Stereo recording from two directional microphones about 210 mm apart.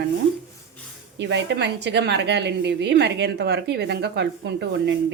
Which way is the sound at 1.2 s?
55° right (ahead or behind).